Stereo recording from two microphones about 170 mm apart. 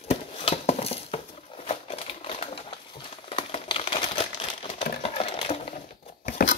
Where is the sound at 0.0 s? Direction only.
35° left (ahead or behind).